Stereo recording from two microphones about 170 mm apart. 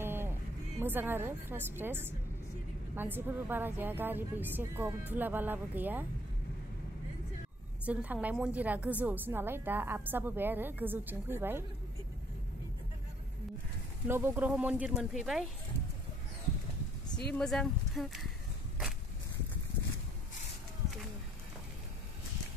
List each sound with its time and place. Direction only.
0.0 s vehicle: 15° right (ahead or behind)
0.7 s a woman's voice: 10° right (ahead or behind)
7.8 s a woman's voice: 10° right (ahead or behind)
14.0 s a woman's voice: 15° right (ahead or behind)
17.3 s speech: 5° left (ahead or behind)